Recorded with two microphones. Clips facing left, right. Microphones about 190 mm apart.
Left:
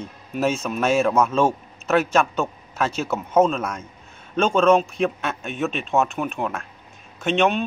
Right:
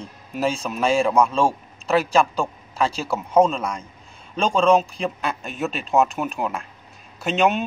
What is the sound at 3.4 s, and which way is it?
A man's voice, 5° left (ahead or behind).